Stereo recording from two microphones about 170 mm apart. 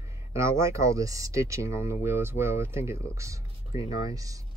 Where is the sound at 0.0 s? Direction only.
15° right (ahead or behind).